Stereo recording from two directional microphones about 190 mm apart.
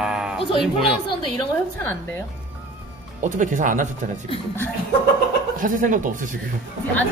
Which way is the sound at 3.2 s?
40° right (ahead or behind).